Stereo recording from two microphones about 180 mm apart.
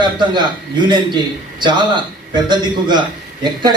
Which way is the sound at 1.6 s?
25° right (ahead or behind).